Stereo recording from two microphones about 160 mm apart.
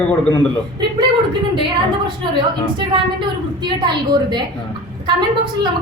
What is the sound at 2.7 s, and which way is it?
A woman's voice, 30° right (ahead or behind).